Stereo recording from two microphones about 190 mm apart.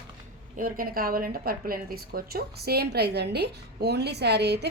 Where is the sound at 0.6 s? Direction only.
50° right (ahead or behind).